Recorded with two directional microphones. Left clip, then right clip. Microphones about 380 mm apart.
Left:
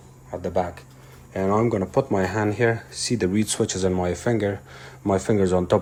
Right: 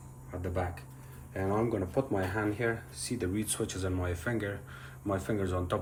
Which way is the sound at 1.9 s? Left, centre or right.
Centre.